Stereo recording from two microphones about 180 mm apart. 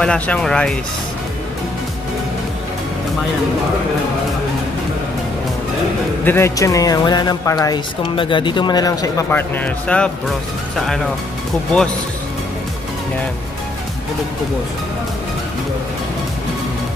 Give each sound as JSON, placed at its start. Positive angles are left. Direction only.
{"t": 0.0, "sound": "speech", "side_deg": 5}
{"t": 6.2, "sound": "speech", "side_deg": 15}